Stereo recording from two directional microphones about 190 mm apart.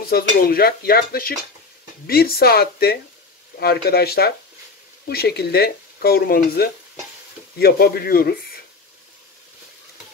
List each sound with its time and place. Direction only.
0.1 s dishes: 50° left (ahead or behind)
2.0 s speech: 55° left (ahead or behind)